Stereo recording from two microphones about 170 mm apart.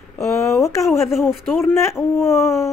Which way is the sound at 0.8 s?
Centre (ahead or behind).